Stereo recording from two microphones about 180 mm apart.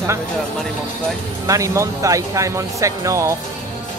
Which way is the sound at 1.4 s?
15° right (ahead or behind).